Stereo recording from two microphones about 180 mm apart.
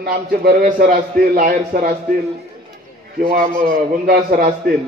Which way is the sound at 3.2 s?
55° right (ahead or behind).